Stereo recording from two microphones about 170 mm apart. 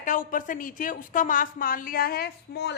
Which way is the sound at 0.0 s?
50° left (ahead or behind).